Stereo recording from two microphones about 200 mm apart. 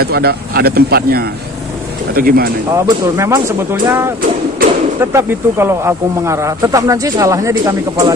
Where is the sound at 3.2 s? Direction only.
15° right (ahead or behind).